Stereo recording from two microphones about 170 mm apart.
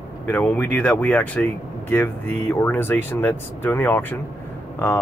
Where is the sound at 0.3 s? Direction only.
10° left (ahead or behind).